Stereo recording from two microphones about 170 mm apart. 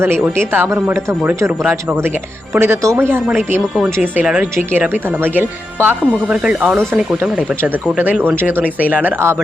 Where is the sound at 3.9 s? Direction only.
10° right (ahead or behind).